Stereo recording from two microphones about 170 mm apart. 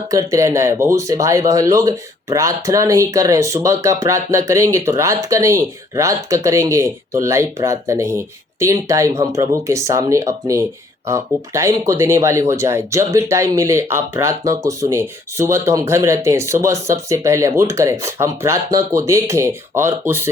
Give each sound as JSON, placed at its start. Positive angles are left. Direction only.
{"t": 0.1, "sound": "speech", "side_deg": -20}